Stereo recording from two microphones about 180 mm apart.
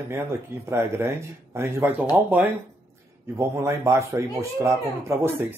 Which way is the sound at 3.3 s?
15° right (ahead or behind).